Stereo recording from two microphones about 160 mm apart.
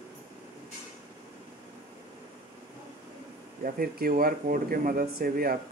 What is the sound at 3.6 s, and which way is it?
Speech, 65° right (ahead or behind).